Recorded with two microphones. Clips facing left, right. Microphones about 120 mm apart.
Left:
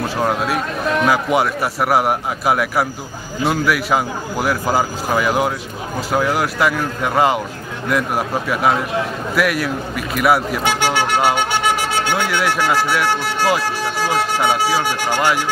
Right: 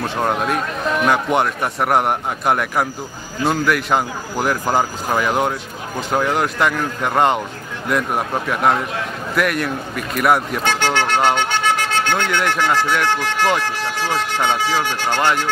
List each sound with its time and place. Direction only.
0.0 s a man's voice: centre (ahead or behind)